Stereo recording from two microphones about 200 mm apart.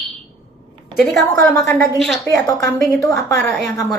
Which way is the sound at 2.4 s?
15° left (ahead or behind).